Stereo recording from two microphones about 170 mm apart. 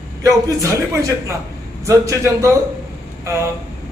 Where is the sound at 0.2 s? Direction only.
20° right (ahead or behind).